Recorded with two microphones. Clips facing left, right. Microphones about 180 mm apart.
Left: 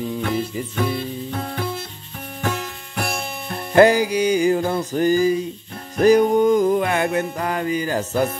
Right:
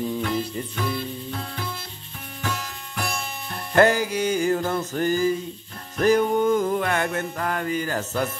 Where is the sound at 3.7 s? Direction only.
15° left (ahead or behind).